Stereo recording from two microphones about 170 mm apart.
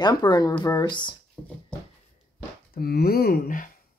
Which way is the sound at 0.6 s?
20° left (ahead or behind).